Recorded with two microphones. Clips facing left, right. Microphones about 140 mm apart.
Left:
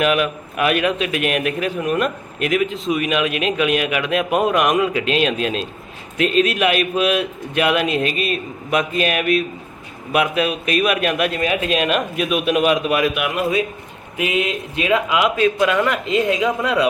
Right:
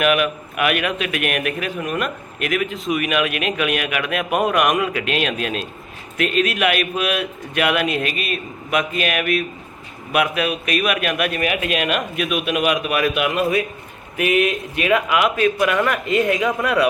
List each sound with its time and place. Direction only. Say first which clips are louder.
0.0 s a man's voice: even; 30° left (ahead or behind)